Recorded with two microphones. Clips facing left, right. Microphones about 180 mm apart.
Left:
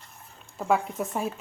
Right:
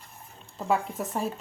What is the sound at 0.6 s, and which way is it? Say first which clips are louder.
Speech: left 2 dB; centre (ahead or behind).